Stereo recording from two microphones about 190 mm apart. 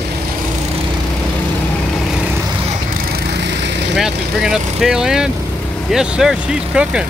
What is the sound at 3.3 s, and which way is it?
Vehicle, 65° right (ahead or behind).